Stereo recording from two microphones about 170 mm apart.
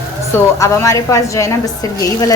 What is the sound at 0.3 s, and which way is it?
A woman's voice, 15° left (ahead or behind).